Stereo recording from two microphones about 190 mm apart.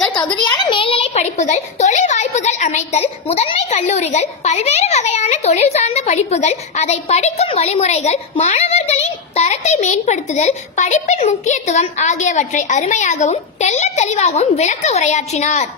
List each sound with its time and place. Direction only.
0.6 s a child's voice: 25° left (ahead or behind)